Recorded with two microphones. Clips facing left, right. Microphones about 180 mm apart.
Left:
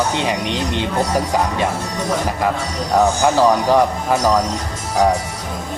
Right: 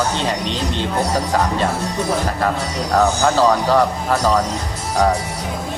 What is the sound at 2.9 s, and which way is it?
Speech, 15° left (ahead or behind).